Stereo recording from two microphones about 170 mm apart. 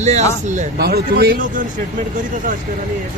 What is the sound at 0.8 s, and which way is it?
Speech, 65° right (ahead or behind).